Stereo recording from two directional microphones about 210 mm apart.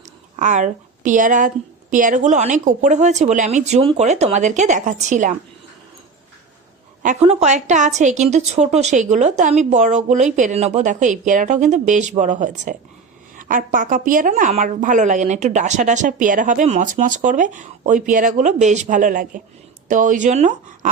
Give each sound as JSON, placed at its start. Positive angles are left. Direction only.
{"t": 0.3, "sound": "a woman's voice", "side_deg": -35}
{"t": 7.0, "sound": "a woman's voice", "side_deg": -30}